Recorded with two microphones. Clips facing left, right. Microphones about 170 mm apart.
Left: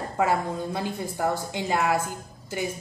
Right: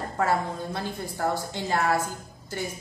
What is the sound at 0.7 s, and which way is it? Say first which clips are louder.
A woman's voice: left 2 dB; 15° left (ahead or behind).